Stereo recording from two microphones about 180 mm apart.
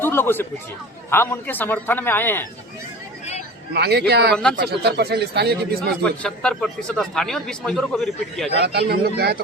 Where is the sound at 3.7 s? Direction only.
65° right (ahead or behind).